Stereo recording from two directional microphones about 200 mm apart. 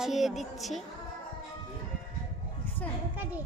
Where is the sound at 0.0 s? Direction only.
Centre (ahead or behind).